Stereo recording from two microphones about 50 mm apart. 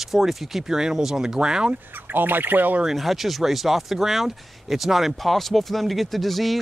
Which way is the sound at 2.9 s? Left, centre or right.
Centre.